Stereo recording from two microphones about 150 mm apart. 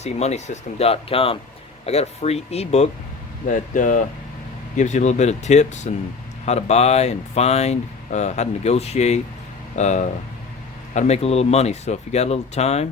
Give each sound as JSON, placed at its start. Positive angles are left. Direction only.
{"t": 0.0, "sound": "speech", "side_deg": 45}
{"t": 3.4, "sound": "speech", "side_deg": 60}